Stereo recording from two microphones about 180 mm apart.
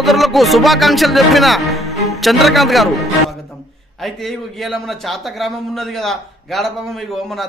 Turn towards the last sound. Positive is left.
turn(degrees=0)  # may be behind; listen again after turning